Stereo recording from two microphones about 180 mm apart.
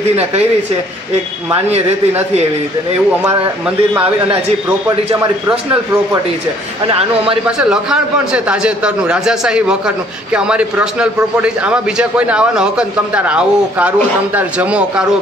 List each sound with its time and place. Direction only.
0.1 s speech: 35° right (ahead or behind)
3.3 s speech: 10° right (ahead or behind)
7.7 s a man's voice: 5° right (ahead or behind)